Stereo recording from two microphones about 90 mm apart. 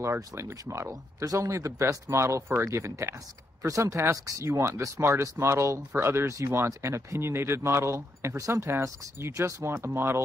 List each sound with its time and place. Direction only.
0.0 s speech: 30° right (ahead or behind)